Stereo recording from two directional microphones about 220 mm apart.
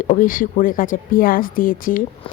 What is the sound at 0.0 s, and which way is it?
A woman's voice, 35° left (ahead or behind).